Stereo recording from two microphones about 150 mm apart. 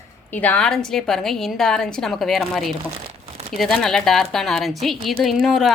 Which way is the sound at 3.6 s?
Centre (ahead or behind).